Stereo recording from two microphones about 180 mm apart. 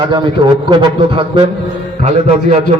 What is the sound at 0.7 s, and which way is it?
Speech, 25° right (ahead or behind).